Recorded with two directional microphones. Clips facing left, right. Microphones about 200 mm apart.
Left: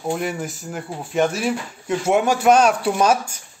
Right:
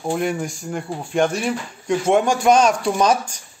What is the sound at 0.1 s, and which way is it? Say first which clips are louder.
Speech: right 3 dB; centre (ahead or behind).